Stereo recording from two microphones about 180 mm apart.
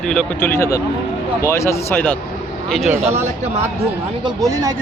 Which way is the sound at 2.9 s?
40° right (ahead or behind).